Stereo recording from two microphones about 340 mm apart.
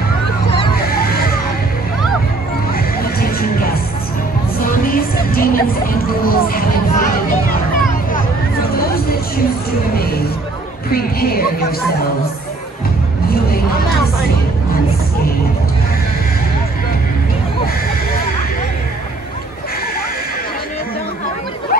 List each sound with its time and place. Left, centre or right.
0.8 s a sound: left
2.7 s music: left
10.9 s chatter: left
13.3 s hubbub: left